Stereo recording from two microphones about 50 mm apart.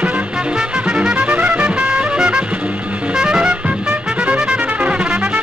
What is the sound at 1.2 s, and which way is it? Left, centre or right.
Music, right.